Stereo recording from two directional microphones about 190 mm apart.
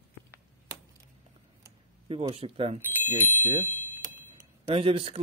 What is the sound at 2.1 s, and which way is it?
Speech, 30° right (ahead or behind).